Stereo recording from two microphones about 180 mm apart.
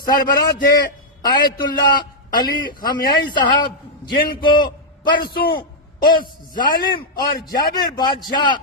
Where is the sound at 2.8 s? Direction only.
55° left (ahead or behind).